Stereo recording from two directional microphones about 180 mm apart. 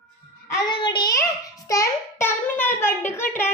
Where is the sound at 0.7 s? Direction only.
25° left (ahead or behind).